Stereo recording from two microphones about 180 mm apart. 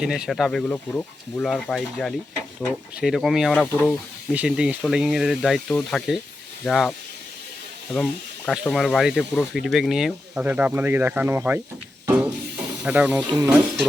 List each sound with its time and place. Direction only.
0.0 s speech: 5° right (ahead or behind)
4.3 s speech: 5° right (ahead or behind)
7.9 s speech: centre (ahead or behind)
12.0 s music: 5° right (ahead or behind)
12.8 s speech: 5° right (ahead or behind)
13.2 s speech: 25° right (ahead or behind)